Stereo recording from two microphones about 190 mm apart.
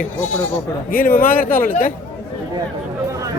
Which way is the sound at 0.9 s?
50° left (ahead or behind).